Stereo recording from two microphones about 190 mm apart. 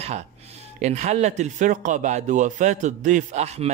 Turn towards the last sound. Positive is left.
turn(degrees=-35)  # may be behind; listen again after turning